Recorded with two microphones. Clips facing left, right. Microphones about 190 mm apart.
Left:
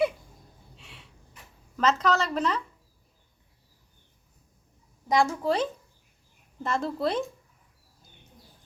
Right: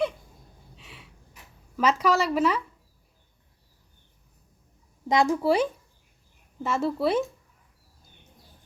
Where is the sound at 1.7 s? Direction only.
10° right (ahead or behind).